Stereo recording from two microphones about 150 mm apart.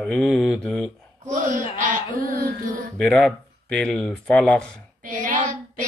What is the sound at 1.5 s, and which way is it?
Speech, 65° right (ahead or behind).